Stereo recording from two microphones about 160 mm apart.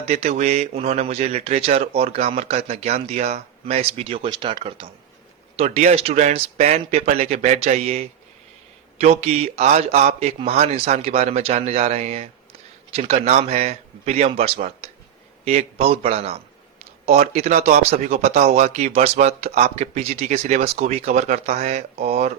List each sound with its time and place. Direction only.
0.0 s a man's voice: 40° right (ahead or behind)